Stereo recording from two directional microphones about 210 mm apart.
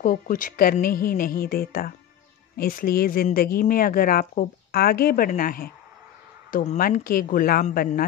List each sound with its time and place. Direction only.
0.0 s speech: 40° left (ahead or behind)